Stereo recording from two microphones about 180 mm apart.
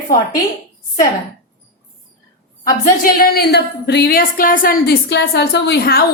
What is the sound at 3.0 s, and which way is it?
A woman's voice, 55° left (ahead or behind).